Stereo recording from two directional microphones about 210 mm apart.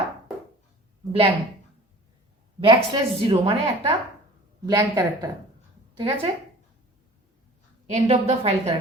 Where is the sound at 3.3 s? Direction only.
25° right (ahead or behind).